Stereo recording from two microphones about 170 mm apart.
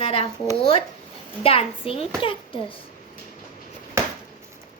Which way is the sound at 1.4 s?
35° left (ahead or behind).